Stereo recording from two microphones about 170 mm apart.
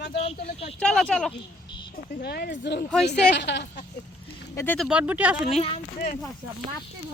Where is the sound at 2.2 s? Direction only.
70° left (ahead or behind).